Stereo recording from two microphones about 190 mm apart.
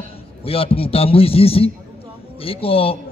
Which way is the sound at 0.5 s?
30° left (ahead or behind).